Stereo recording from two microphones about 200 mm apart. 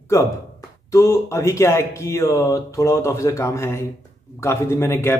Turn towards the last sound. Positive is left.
turn(degrees=10)  # may be behind; listen again after turning